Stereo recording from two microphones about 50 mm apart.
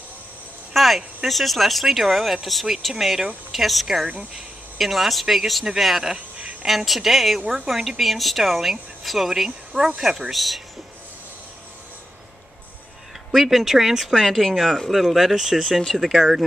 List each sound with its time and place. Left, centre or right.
0.7 s speech: centre
6.1 s speech: right
6.6 s speech: centre
13.3 s speech: centre